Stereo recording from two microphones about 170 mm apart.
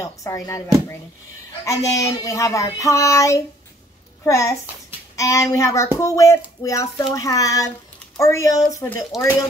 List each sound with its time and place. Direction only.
0.0 s a child's voice: 20° left (ahead or behind)